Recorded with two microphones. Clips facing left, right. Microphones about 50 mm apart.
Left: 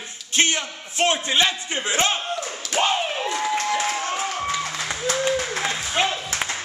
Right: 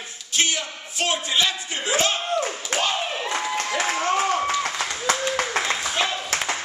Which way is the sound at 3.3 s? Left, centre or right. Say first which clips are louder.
Left 2 dB; right.